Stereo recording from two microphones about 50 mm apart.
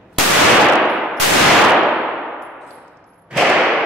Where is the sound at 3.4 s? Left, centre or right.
Centre.